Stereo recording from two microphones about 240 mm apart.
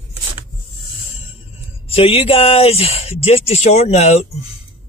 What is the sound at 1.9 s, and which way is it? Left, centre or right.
Speech, left.